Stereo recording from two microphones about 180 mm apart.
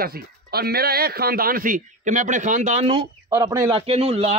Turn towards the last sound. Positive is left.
turn(degrees=-35)  # may be behind; listen again after turning